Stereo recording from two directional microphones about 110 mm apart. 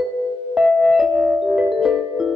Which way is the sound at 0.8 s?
Centre (ahead or behind).